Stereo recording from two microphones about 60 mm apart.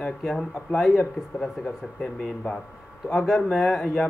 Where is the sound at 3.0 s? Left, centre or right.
Centre.